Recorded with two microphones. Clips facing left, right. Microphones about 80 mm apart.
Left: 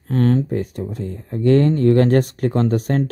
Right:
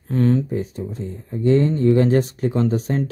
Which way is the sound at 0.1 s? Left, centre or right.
Left.